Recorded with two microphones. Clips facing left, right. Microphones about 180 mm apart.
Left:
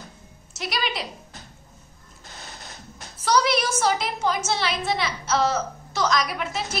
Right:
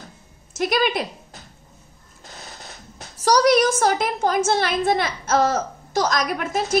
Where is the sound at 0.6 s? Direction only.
50° right (ahead or behind).